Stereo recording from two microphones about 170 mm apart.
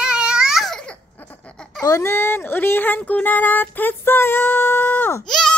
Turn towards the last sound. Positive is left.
turn(degrees=0)  # may be behind; listen again after turning